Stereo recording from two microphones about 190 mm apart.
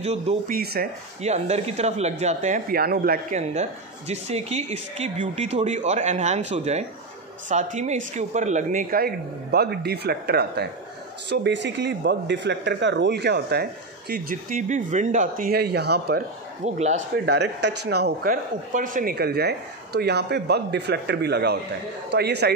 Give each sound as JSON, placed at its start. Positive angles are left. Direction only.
{"t": 0.0, "sound": "speech", "side_deg": -35}
{"t": 0.5, "sound": "speech", "side_deg": -55}
{"t": 1.2, "sound": "speech", "side_deg": -35}
{"t": 4.1, "sound": "speech", "side_deg": -35}
{"t": 16.6, "sound": "speech", "side_deg": -35}
{"t": 17.1, "sound": "speech", "side_deg": -65}